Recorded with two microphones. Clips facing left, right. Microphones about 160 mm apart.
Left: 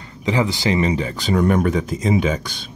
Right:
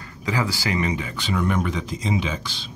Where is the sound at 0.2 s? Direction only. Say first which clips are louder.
Left 5 dB; 20° left (ahead or behind).